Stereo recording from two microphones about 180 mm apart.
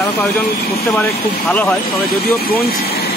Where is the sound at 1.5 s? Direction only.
10° left (ahead or behind).